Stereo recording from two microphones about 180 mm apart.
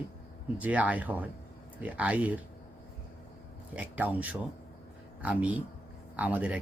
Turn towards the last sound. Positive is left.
turn(degrees=-5)  # may be behind; listen again after turning